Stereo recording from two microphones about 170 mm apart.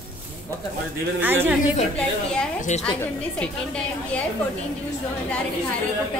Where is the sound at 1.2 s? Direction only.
10° right (ahead or behind).